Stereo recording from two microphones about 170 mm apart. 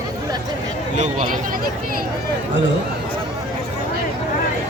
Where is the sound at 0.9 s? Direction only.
45° right (ahead or behind).